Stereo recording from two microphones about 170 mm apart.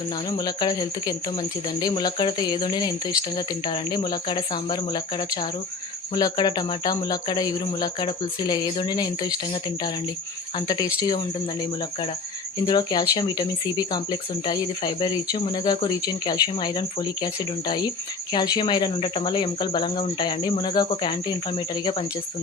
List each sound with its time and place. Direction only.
0.3 s speech: 25° left (ahead or behind)
12.6 s speech: 25° left (ahead or behind)